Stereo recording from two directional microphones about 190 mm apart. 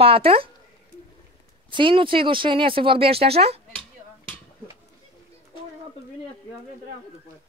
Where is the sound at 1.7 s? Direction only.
25° right (ahead or behind).